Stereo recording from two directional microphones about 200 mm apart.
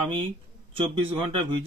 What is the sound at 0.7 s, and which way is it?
Speech, 25° right (ahead or behind).